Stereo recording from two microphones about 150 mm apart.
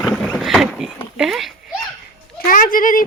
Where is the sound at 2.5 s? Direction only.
65° left (ahead or behind).